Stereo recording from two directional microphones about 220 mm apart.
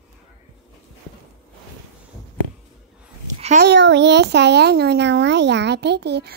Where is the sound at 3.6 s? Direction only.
50° right (ahead or behind).